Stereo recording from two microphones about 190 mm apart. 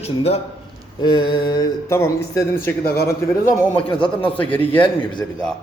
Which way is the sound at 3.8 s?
25° left (ahead or behind).